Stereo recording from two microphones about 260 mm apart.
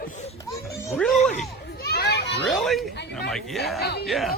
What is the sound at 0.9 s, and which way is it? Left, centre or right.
Music, centre.